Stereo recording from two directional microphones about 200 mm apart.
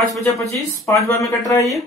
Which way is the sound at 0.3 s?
10° left (ahead or behind).